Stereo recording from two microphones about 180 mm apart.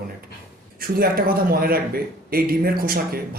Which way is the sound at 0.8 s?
55° right (ahead or behind).